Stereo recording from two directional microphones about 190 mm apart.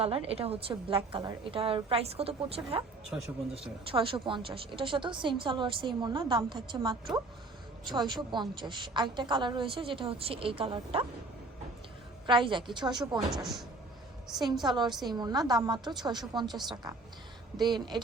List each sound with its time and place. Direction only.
0.0 s a woman's voice: 30° right (ahead or behind)
3.9 s a woman's voice: 25° right (ahead or behind)
12.2 s a woman's voice: 25° right (ahead or behind)
13.3 s a woman's voice: centre (ahead or behind)
14.6 s a woman's voice: 25° right (ahead or behind)